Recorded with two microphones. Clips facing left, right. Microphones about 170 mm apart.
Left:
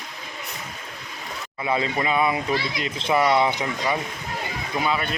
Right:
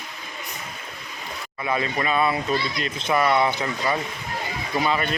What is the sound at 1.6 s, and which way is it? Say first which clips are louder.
Speech: left 1 dB; 20° left (ahead or behind).